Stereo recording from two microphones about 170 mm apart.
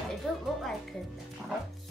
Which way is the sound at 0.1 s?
Centre (ahead or behind).